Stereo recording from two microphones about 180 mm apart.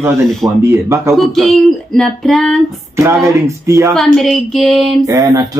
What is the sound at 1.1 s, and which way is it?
Speech, centre (ahead or behind).